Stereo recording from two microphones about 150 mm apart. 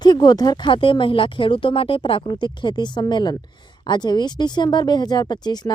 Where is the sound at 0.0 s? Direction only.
25° left (ahead or behind).